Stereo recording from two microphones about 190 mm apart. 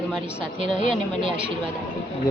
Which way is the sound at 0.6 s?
30° right (ahead or behind).